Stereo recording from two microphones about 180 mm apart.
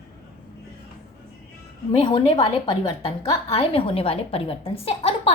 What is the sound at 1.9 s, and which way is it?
A woman's voice, 30° left (ahead or behind).